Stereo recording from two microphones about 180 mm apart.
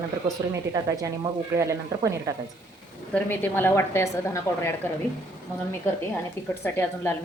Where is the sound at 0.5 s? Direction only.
20° right (ahead or behind).